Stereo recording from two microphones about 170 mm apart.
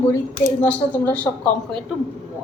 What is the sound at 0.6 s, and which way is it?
A woman's voice, 10° left (ahead or behind).